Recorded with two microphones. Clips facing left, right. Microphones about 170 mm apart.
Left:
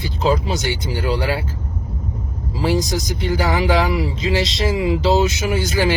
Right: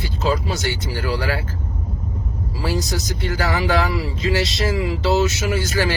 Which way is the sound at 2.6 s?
20° left (ahead or behind).